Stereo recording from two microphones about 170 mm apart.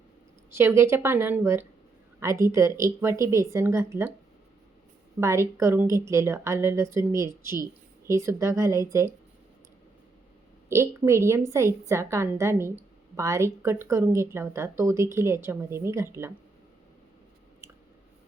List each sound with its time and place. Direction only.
0.5 s a woman's voice: 15° right (ahead or behind)
5.2 s a woman's voice: 15° right (ahead or behind)
10.7 s a woman's voice: 15° right (ahead or behind)